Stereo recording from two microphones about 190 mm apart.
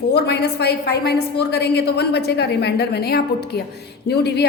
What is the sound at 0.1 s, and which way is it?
A woman's voice, 60° left (ahead or behind).